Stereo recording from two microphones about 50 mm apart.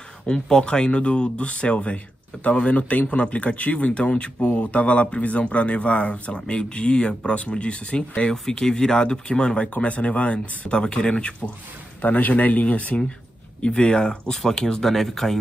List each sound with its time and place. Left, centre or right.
0.3 s speech: centre
12.0 s speech: left; by 15.3 s centre